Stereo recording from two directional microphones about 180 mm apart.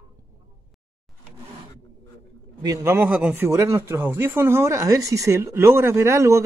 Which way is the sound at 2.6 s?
20° right (ahead or behind).